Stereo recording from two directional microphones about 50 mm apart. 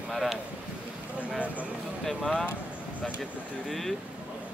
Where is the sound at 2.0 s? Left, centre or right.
Centre.